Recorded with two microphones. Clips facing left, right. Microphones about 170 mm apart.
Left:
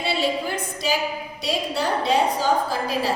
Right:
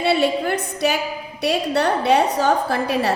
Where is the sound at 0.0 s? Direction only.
60° right (ahead or behind).